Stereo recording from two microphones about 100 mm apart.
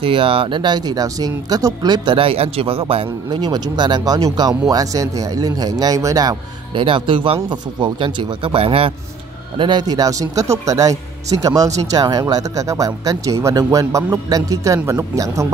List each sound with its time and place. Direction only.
0.0 s speech: 65° right (ahead or behind); by 2.1 s 45° right (ahead or behind)
2.1 s speech: 75° right (ahead or behind)
3.3 s speech: 45° right (ahead or behind)
6.7 s a man's voice: 60° right (ahead or behind)
9.6 s speech: 50° right (ahead or behind)